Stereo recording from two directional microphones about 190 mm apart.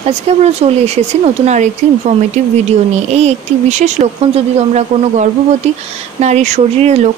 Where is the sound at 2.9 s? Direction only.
35° right (ahead or behind).